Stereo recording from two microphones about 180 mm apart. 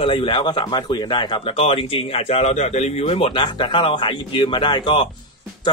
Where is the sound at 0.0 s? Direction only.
25° left (ahead or behind).